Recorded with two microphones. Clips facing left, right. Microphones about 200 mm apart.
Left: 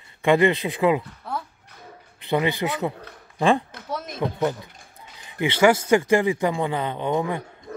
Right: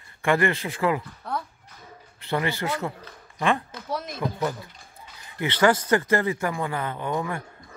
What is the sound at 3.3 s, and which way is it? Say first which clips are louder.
Speech: left 5 dB; 30° left (ahead or behind).